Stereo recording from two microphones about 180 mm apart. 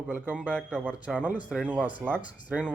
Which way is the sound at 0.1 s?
10° right (ahead or behind).